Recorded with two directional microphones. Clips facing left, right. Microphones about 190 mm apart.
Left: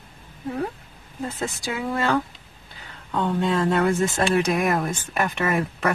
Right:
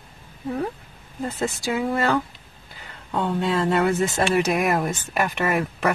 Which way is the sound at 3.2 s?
5° right (ahead or behind).